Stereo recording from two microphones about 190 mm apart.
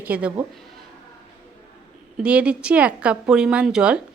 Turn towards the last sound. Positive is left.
turn(degrees=-5)  # may be behind; listen again after turning